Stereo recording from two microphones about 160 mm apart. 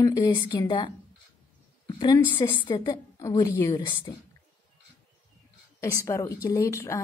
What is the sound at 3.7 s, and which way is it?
Speech, 30° left (ahead or behind).